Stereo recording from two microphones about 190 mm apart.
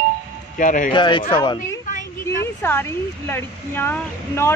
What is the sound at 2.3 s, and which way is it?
A woman's voice, 15° left (ahead or behind).